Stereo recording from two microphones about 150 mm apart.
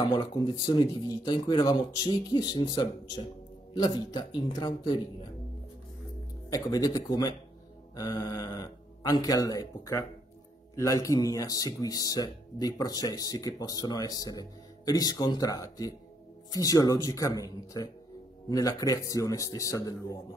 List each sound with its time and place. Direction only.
0.0 s speech: 35° left (ahead or behind)
6.5 s speech: 25° left (ahead or behind)